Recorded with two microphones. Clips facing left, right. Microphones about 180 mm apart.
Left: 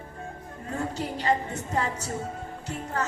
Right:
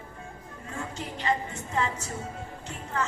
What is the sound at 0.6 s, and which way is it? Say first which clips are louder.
A woman's voice: left 6 dB; 40° left (ahead or behind).